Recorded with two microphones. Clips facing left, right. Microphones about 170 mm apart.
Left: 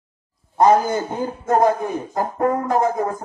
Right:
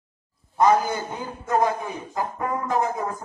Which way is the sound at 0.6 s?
45° left (ahead or behind).